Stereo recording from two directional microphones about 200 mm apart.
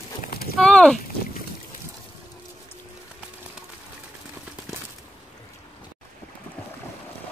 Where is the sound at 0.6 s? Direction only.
5° left (ahead or behind).